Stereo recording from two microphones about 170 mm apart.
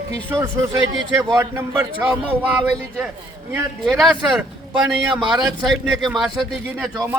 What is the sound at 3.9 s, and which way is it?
Speech, 5° right (ahead or behind).